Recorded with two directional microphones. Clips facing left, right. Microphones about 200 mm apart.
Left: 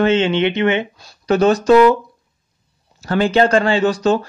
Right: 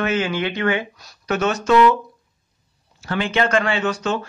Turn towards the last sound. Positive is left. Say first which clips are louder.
# left 7 dB
turn(degrees=35)  # may be behind; listen again after turning